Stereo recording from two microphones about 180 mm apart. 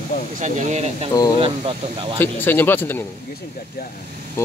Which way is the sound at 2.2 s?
10° left (ahead or behind).